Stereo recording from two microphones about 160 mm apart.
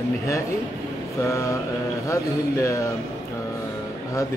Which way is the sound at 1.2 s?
20° left (ahead or behind).